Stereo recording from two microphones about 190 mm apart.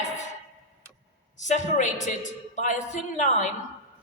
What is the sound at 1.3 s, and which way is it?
A woman's voice, 40° left (ahead or behind).